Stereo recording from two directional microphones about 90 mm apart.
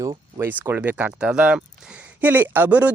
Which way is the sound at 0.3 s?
25° right (ahead or behind).